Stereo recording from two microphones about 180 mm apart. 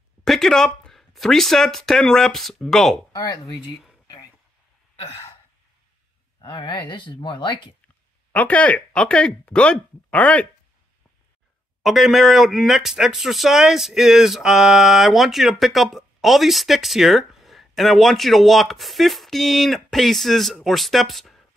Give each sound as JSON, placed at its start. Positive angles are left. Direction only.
{"t": 0.2, "sound": "speech", "side_deg": 0}
{"t": 4.9, "sound": "a sound", "side_deg": 35}
{"t": 6.4, "sound": "speech", "side_deg": 25}
{"t": 8.3, "sound": "speech", "side_deg": 10}
{"t": 11.8, "sound": "speech", "side_deg": 0}